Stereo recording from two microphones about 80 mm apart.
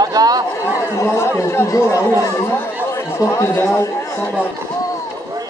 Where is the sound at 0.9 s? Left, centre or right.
Left.